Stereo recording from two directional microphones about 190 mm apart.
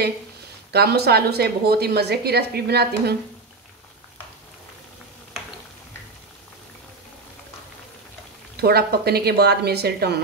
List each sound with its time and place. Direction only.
0.7 s a woman's voice: 60° right (ahead or behind)
8.5 s a woman's voice: 55° right (ahead or behind)